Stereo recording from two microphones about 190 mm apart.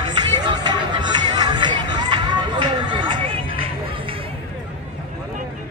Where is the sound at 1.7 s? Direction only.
25° right (ahead or behind).